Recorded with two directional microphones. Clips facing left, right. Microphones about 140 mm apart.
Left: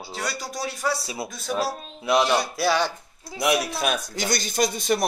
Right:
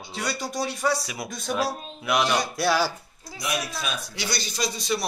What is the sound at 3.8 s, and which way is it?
Speech, 50° left (ahead or behind).